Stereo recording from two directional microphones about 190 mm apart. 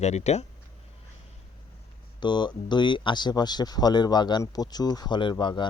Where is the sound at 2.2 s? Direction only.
25° left (ahead or behind).